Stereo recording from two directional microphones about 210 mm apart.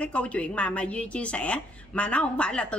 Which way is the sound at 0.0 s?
5° left (ahead or behind).